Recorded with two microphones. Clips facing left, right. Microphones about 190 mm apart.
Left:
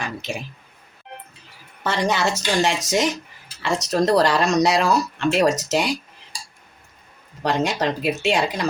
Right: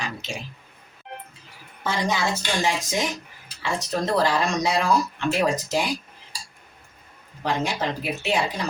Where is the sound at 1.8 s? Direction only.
70° left (ahead or behind).